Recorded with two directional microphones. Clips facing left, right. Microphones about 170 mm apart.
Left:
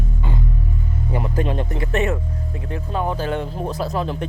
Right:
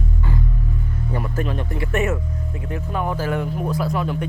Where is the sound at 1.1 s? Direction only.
20° left (ahead or behind).